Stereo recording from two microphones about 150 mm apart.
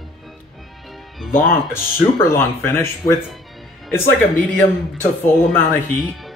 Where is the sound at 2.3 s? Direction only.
15° left (ahead or behind).